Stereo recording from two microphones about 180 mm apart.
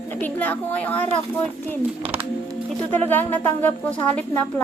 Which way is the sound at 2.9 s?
10° left (ahead or behind).